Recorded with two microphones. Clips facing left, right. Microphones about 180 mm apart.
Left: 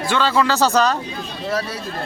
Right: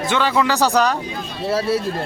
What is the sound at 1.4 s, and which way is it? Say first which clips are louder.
Speech: right 6 dB; 30° right (ahead or behind).